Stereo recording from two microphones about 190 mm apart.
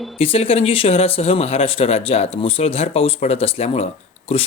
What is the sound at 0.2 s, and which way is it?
Speech, 30° left (ahead or behind).